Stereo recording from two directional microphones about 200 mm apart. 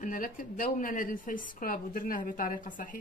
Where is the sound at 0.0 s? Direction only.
40° left (ahead or behind).